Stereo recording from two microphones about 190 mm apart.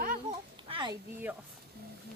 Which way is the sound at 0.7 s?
25° right (ahead or behind).